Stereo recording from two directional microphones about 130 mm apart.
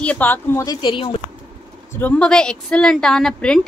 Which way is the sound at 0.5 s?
30° left (ahead or behind).